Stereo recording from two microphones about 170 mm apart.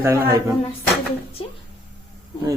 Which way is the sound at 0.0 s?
15° right (ahead or behind).